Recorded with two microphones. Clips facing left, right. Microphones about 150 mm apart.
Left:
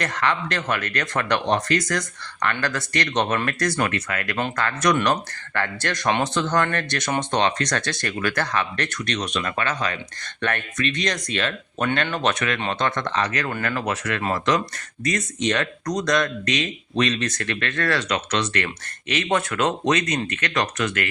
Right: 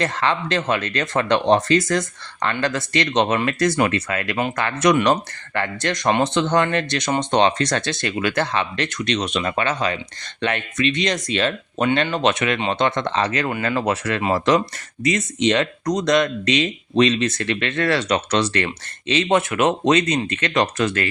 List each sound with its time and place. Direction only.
0.0 s speech: 25° right (ahead or behind)